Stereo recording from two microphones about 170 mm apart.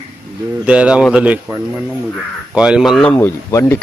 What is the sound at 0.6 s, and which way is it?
Speech, 5° right (ahead or behind).